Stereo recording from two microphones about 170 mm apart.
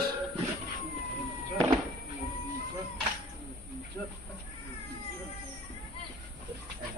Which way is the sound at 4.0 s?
10° left (ahead or behind).